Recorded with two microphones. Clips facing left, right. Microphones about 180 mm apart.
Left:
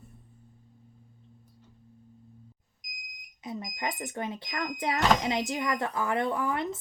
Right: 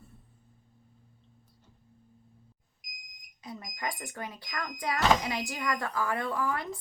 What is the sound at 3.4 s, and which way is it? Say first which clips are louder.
Speech: left 3 dB; 20° left (ahead or behind).